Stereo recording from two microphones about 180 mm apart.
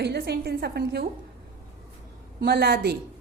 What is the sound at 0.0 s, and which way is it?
A woman's voice, 65° right (ahead or behind).